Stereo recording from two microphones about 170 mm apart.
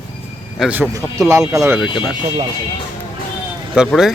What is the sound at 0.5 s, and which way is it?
Speech, 5° right (ahead or behind).